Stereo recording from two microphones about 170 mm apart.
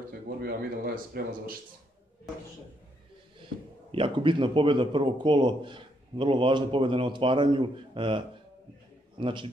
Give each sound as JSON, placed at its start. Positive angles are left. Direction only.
{"t": 0.4, "sound": "speech", "side_deg": -65}
{"t": 3.9, "sound": "a man's voice", "side_deg": -30}
{"t": 9.2, "sound": "a man's voice", "side_deg": -30}